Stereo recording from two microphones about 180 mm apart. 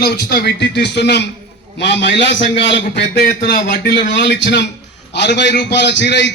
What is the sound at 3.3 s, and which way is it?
A man's voice, 55° left (ahead or behind).